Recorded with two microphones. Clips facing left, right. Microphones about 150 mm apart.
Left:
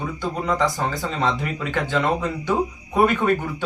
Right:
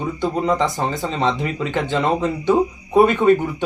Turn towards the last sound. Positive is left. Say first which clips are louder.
# right 6 dB
turn(degrees=-25)  # may be behind; listen again after turning